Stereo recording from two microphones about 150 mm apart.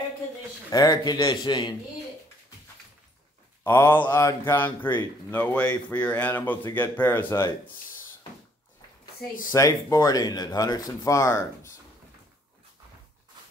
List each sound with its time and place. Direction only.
0.7 s speech: 25° left (ahead or behind)
3.6 s a man's voice: 15° left (ahead or behind)
9.5 s speech: 20° left (ahead or behind)